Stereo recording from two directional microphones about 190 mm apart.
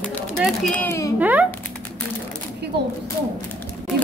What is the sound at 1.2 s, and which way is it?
Speech, 10° right (ahead or behind).